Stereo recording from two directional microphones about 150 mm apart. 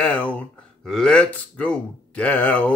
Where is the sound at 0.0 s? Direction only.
10° left (ahead or behind).